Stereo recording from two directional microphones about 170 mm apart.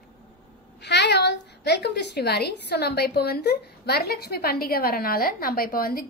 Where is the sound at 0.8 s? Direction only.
85° left.